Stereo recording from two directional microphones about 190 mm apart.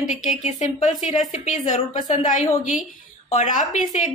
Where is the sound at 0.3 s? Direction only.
40° left (ahead or behind).